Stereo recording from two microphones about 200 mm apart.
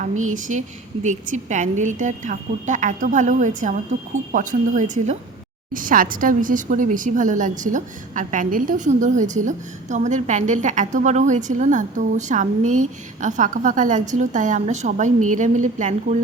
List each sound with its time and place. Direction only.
0.3 s a woman's voice: 40° right (ahead or behind)